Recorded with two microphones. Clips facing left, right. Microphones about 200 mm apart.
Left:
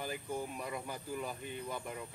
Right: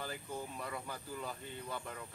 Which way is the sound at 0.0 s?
15° left (ahead or behind).